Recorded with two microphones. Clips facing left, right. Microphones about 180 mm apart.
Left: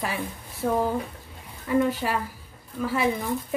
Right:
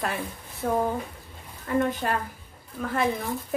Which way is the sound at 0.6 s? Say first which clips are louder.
Left 1 dB; 10° left (ahead or behind).